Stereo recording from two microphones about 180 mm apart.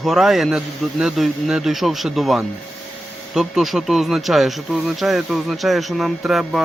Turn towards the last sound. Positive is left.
turn(degrees=0)  # may be behind; listen again after turning